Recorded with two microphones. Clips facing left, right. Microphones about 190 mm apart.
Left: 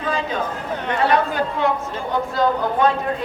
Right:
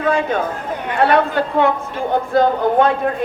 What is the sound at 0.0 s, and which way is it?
Chatter, 55° right (ahead or behind).